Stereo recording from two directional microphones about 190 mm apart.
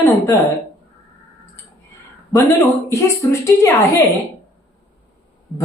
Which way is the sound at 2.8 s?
15° left (ahead or behind).